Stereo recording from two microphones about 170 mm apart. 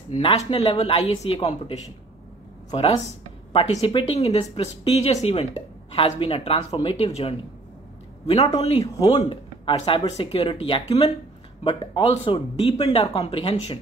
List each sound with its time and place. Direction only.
0.1 s speech: 35° left (ahead or behind)
8.3 s speech: 40° left (ahead or behind)